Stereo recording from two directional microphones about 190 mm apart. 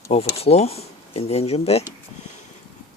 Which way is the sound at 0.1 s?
30° left (ahead or behind).